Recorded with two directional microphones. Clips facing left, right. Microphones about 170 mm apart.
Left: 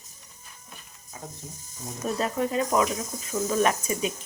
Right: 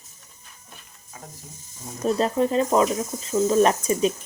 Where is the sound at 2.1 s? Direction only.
30° right (ahead or behind).